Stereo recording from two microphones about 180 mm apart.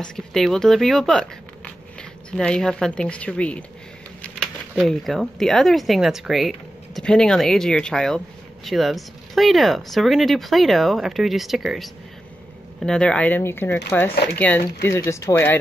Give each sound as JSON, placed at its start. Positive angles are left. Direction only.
{"t": 0.0, "sound": "speech", "side_deg": 5}